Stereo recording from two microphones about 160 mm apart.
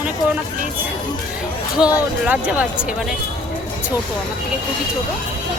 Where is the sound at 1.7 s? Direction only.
5° right (ahead or behind).